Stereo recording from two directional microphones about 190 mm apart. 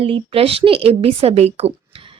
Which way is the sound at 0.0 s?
30° right (ahead or behind).